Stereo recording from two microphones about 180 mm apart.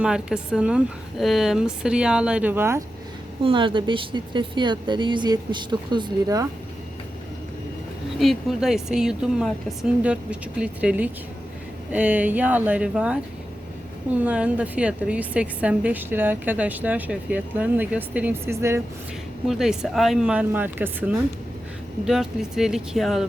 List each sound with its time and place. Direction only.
0.0 s a woman's voice: 5° right (ahead or behind)
3.4 s speech: 25° right (ahead or behind)
8.2 s a woman's voice: centre (ahead or behind)